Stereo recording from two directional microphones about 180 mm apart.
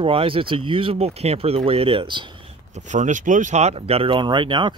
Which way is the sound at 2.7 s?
40° right (ahead or behind).